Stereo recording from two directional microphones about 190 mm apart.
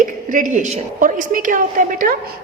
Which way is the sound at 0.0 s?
45° right (ahead or behind).